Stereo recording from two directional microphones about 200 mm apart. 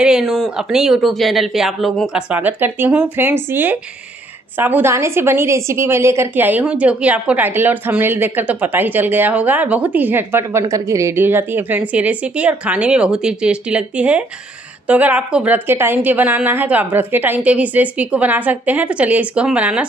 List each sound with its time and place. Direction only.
0.0 s a woman's voice: centre (ahead or behind)